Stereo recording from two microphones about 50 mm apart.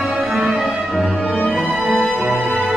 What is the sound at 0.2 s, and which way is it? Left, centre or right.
Music, centre.